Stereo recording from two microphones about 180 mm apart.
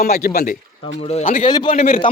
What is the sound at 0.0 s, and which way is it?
A man's voice, 55° left (ahead or behind).